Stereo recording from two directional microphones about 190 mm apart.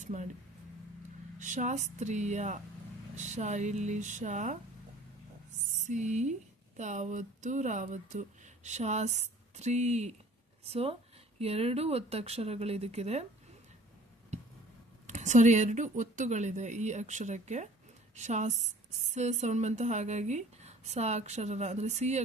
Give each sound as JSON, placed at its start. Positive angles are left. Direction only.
{"t": 0.0, "sound": "speech", "side_deg": -40}
{"t": 1.4, "sound": "speech", "side_deg": -40}
{"t": 5.7, "sound": "speech", "side_deg": -40}
{"t": 15.0, "sound": "speech", "side_deg": -40}